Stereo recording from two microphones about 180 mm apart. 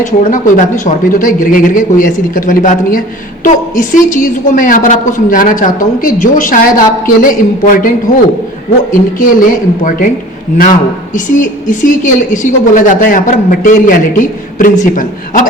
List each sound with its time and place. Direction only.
0.3 s a woman's voice: 45° left (ahead or behind)
8.9 s a woman's voice: 50° left (ahead or behind)